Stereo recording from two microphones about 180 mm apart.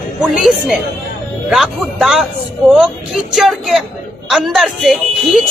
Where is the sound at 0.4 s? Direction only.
Centre (ahead or behind).